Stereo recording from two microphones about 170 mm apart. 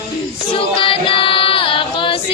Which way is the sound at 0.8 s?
30° left (ahead or behind).